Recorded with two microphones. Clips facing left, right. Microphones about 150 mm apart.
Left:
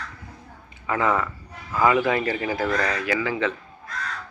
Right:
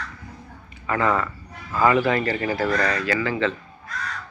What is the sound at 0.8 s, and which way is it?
Speech, 15° left (ahead or behind).